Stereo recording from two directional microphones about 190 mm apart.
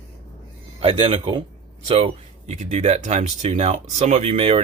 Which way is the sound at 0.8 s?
30° right (ahead or behind).